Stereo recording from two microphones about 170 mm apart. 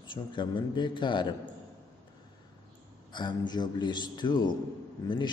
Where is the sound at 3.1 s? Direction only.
25° left (ahead or behind).